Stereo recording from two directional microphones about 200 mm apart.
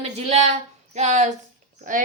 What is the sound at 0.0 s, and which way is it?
A woman's voice, 35° right (ahead or behind).